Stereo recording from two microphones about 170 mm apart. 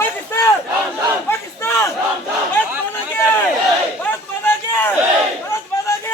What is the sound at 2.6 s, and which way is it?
Chatter, 10° left (ahead or behind).